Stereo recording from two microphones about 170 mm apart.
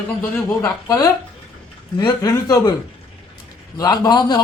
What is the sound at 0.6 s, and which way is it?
A man's voice, 20° left (ahead or behind).